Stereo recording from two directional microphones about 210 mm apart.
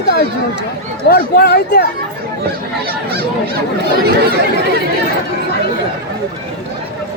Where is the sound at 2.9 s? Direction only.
45° right (ahead or behind).